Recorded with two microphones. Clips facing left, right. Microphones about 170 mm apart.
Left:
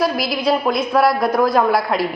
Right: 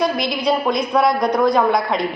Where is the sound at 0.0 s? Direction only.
5° left (ahead or behind).